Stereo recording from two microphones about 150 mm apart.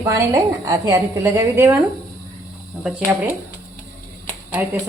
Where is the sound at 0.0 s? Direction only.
20° right (ahead or behind).